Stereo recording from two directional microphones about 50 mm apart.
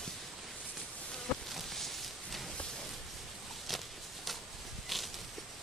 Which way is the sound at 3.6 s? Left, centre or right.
Centre.